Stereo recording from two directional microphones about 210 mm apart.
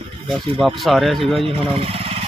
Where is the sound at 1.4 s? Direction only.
25° right (ahead or behind).